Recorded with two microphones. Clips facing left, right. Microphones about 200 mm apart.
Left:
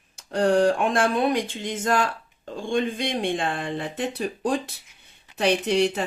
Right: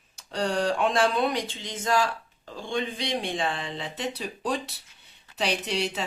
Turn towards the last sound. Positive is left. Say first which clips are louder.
# left 7 dB
turn(degrees=50)  # may be behind; listen again after turning